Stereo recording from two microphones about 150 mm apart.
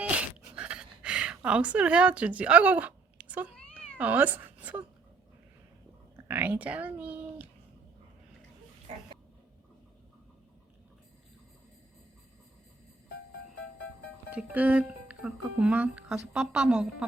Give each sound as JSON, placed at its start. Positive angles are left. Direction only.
{"t": 0.0, "sound": "a sound", "side_deg": -10}
{"t": 3.9, "sound": "speech", "side_deg": -10}
{"t": 6.1, "sound": "speech", "side_deg": -15}
{"t": 14.3, "sound": "speech", "side_deg": -10}